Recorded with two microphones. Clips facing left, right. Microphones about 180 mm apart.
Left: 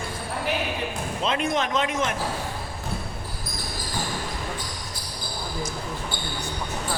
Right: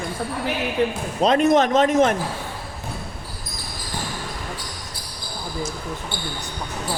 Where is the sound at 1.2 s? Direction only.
40° right (ahead or behind).